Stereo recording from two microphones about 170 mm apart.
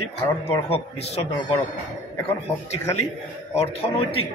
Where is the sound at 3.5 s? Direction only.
40° left (ahead or behind).